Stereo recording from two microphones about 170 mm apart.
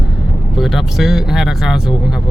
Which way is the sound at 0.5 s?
Centre (ahead or behind).